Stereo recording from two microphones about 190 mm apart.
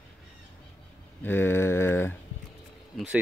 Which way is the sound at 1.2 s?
10° left (ahead or behind).